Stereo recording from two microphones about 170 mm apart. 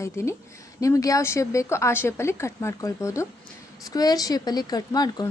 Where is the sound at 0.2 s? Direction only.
15° left (ahead or behind).